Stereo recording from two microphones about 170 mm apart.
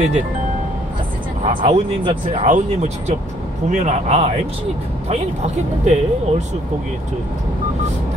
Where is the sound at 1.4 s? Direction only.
30° right (ahead or behind).